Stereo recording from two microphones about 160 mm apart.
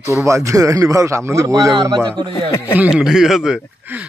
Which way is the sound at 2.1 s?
35° right (ahead or behind).